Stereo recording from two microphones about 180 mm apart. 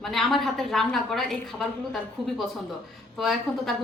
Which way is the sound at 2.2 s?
30° right (ahead or behind).